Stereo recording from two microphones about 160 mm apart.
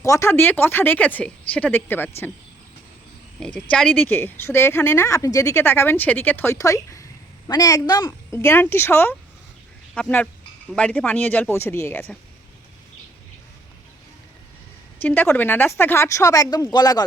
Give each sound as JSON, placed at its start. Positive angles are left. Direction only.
{"t": 0.0, "sound": "speech", "side_deg": 20}
{"t": 3.4, "sound": "speech", "side_deg": 5}
{"t": 15.0, "sound": "speech", "side_deg": 10}